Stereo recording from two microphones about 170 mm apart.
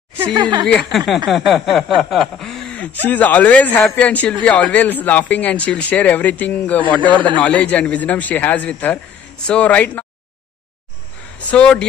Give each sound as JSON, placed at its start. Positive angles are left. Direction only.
{"t": 0.3, "sound": "speech", "side_deg": -25}
{"t": 0.9, "sound": "a sound", "side_deg": 0}
{"t": 2.0, "sound": "chuckle", "side_deg": 0}
{"t": 3.1, "sound": "a man's voice", "side_deg": 10}
{"t": 11.3, "sound": "speech", "side_deg": 5}